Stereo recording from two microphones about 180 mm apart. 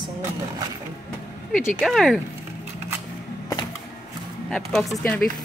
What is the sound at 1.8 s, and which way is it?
Speech, centre (ahead or behind).